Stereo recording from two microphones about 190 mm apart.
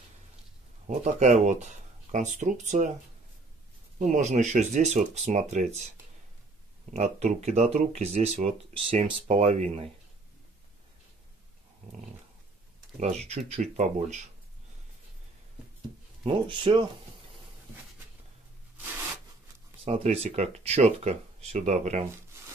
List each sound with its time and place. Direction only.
0.8 s speech: 40° right (ahead or behind)
4.0 s speech: 40° right (ahead or behind)
6.9 s speech: 35° right (ahead or behind)
13.0 s speech: 35° right (ahead or behind)
16.3 s speech: 25° right (ahead or behind)
19.8 s speech: 30° right (ahead or behind)